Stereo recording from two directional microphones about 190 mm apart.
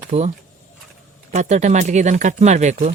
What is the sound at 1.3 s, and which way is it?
Speech, 35° right (ahead or behind).